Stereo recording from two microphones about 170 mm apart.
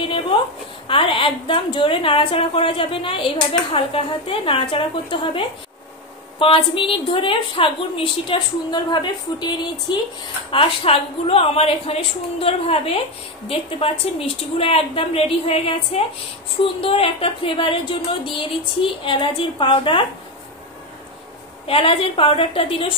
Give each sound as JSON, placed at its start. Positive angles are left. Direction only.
{"t": 0.0, "sound": "a sound", "side_deg": 30}
{"t": 0.8, "sound": "a woman's voice", "side_deg": 30}
{"t": 6.4, "sound": "a woman's voice", "side_deg": 30}
{"t": 21.6, "sound": "a woman's voice", "side_deg": 35}